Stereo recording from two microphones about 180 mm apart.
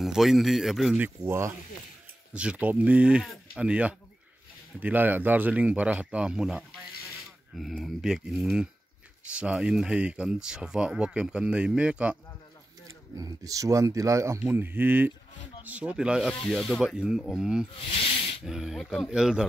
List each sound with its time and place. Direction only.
0.0 s speech: centre (ahead or behind)
13.1 s speech: 20° right (ahead or behind); by 17.6 s 5° right (ahead or behind)
17.7 s speech: 35° left (ahead or behind)
18.4 s speech: 5° right (ahead or behind)